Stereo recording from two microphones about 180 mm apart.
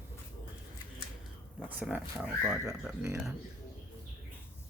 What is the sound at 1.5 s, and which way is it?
Speech, 10° right (ahead or behind).